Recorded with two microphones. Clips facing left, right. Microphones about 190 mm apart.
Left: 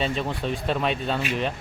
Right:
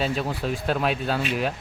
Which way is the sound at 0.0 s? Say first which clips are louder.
Right 1 dB; 5° right (ahead or behind).